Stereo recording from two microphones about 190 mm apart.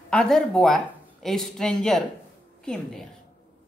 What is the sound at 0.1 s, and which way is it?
A woman's voice, 5° left (ahead or behind).